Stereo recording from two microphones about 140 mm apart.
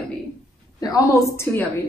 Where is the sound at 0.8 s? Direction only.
25° left (ahead or behind).